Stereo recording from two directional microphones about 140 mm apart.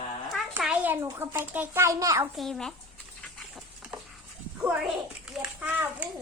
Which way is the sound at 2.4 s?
5° left (ahead or behind).